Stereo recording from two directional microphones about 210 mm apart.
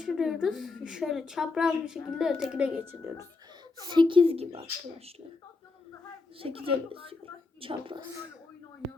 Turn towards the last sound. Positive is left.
turn(degrees=-25)  # may be behind; listen again after turning